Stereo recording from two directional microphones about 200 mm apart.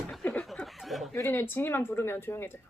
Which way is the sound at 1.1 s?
15° left (ahead or behind).